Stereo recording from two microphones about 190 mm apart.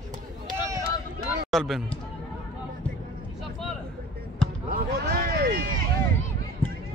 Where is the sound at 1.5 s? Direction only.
Centre (ahead or behind).